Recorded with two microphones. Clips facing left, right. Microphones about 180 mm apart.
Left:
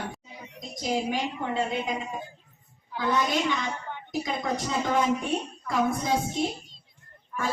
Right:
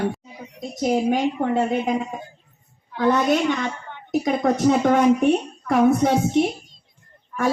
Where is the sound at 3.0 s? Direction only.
60° right (ahead or behind).